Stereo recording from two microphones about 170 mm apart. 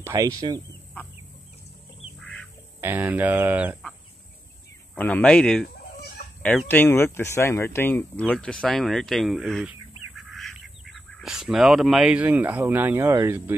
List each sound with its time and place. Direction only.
0.0 s speech: 20° right (ahead or behind)
2.1 s duck: 5° left (ahead or behind)
2.8 s speech: 10° right (ahead or behind)
4.9 s speech: 10° left (ahead or behind); by 13.6 s 15° right (ahead or behind)